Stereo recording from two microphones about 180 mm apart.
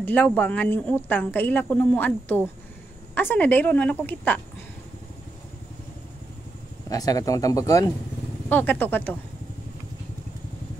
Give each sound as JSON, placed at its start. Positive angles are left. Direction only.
{"t": 0.0, "sound": "a woman's voice", "side_deg": 5}
{"t": 6.9, "sound": "a woman's voice", "side_deg": 20}